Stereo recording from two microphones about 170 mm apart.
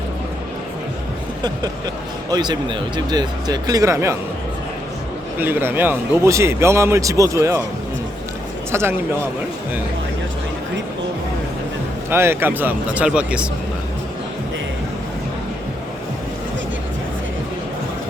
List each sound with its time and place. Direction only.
1.4 s a sound: 25° right (ahead or behind)
2.3 s speech: 25° right (ahead or behind)
5.4 s speech: 10° right (ahead or behind)
8.7 s speech: 15° right (ahead or behind)
12.1 s speech: 15° right (ahead or behind)